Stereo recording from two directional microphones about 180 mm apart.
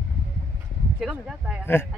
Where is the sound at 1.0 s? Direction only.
5° right (ahead or behind).